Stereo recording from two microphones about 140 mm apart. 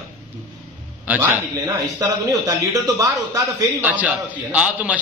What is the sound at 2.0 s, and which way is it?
A man's voice, 25° right (ahead or behind).